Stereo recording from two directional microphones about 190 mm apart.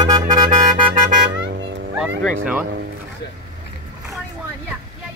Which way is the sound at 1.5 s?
70° right (ahead or behind).